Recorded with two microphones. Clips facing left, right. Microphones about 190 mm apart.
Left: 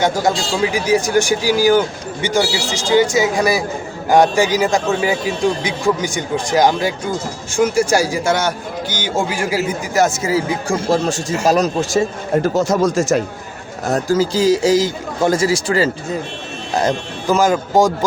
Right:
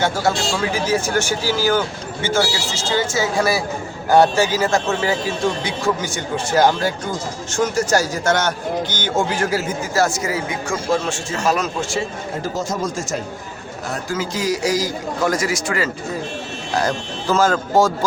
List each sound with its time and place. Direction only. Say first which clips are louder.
0.0 s a man's voice: left 2 dB; 15° left (ahead or behind); by 12.0 s 40° left (ahead or behind)
12.4 s speech: left 8 dB; 70° left (ahead or behind)
13.8 s a man's voice: left 9 dB; 40° left (ahead or behind)
16.7 s a man's voice: left 3 dB; 20° left (ahead or behind)